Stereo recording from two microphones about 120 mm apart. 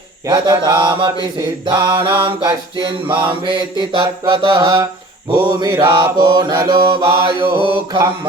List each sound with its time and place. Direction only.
0.3 s mantra: 40° right (ahead or behind)